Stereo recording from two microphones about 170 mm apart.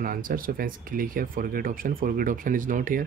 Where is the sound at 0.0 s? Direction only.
55° right (ahead or behind).